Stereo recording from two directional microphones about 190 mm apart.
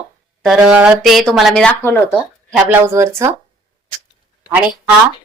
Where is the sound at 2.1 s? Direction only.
5° right (ahead or behind).